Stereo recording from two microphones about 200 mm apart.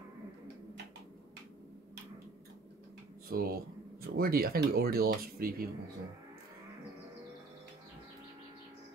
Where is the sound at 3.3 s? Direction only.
45° right (ahead or behind).